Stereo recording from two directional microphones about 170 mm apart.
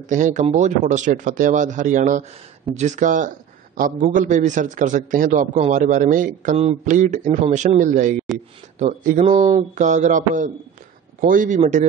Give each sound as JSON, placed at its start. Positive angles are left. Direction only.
{"t": 0.1, "sound": "a man's voice", "side_deg": -45}